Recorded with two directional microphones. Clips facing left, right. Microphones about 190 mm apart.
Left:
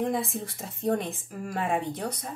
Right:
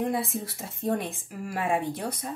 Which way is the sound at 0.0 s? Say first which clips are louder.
Even; 5° right (ahead or behind).